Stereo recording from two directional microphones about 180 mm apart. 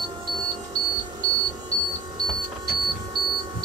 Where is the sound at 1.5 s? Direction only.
20° right (ahead or behind).